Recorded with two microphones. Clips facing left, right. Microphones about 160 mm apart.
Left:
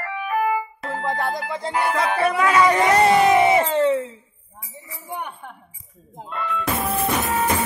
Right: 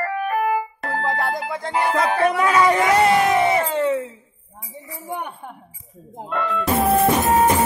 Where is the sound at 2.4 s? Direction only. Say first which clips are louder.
Left 2 dB; centre (ahead or behind).